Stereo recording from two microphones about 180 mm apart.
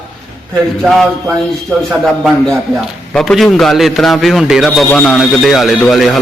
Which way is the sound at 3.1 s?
Centre (ahead or behind).